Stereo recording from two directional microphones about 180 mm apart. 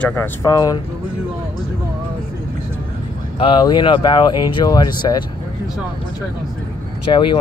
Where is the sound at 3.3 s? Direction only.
30° left (ahead or behind).